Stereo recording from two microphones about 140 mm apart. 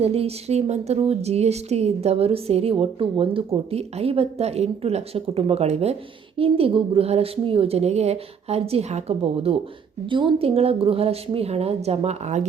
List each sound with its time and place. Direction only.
0.0 s speech: 45° right (ahead or behind)